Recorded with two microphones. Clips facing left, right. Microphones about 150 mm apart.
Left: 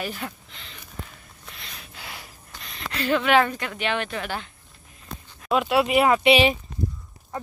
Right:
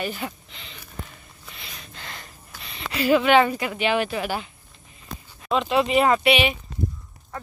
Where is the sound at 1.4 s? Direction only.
Centre (ahead or behind).